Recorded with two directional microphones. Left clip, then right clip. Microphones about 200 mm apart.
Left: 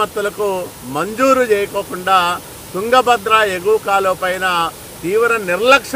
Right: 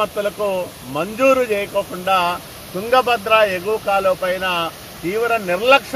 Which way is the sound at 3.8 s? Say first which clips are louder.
Left 2 dB; 20° left (ahead or behind).